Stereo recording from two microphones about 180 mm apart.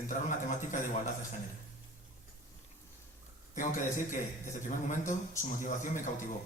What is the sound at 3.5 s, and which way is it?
Speech, 45° left (ahead or behind).